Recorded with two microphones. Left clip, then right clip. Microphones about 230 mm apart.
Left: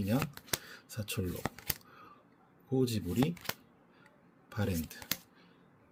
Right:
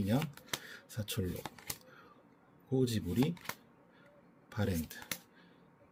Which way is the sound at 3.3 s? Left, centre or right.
Left.